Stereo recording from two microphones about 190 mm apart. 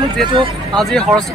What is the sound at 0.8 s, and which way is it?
Speech, centre (ahead or behind).